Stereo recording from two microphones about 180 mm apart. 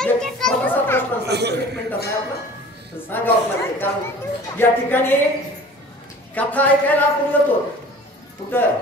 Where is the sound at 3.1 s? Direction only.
10° left (ahead or behind).